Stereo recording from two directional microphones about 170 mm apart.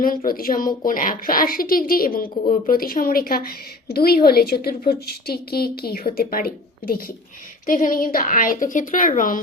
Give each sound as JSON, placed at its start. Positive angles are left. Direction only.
{"t": 0.3, "sound": "a woman's voice", "side_deg": 55}